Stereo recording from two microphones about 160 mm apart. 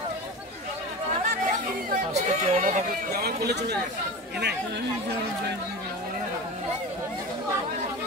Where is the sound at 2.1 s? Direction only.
45° right (ahead or behind).